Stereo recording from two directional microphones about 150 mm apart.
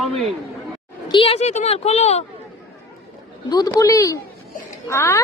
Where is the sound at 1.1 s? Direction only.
40° left (ahead or behind).